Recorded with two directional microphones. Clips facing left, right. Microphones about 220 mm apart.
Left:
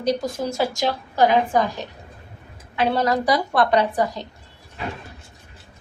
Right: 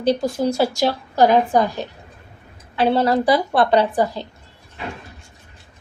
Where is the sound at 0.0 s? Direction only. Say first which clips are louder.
Right 4 dB; 30° right (ahead or behind).